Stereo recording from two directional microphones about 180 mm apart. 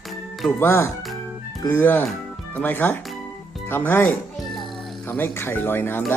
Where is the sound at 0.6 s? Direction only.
15° left (ahead or behind).